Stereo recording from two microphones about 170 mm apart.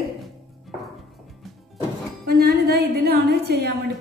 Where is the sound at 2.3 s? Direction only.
65° right (ahead or behind).